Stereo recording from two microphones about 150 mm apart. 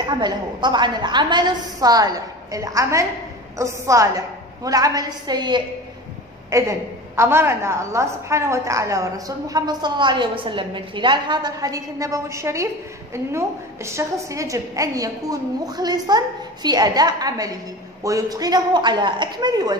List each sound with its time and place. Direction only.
0.0 s a woman's voice: 30° right (ahead or behind)
6.5 s a woman's voice: 20° right (ahead or behind)